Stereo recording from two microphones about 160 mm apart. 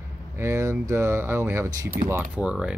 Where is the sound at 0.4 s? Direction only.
15° right (ahead or behind).